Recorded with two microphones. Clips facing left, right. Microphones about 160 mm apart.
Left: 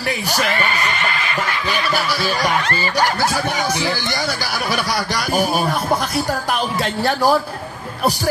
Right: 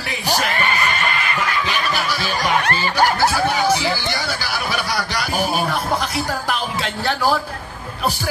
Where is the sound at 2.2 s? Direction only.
40° left (ahead or behind).